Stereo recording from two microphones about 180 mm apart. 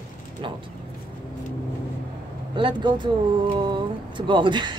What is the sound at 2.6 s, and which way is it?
Speech, 25° right (ahead or behind).